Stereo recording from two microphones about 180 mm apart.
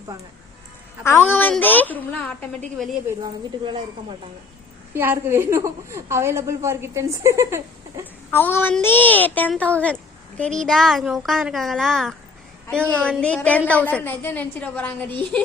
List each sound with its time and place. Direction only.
1.0 s a woman's voice: 10° left (ahead or behind)
3.2 s speech: 25° right (ahead or behind)
4.9 s a woman's voice: 10° right (ahead or behind)
8.3 s a child's voice: 10° left (ahead or behind)